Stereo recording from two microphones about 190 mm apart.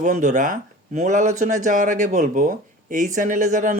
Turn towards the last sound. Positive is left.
turn(degrees=-40)  # may be behind; listen again after turning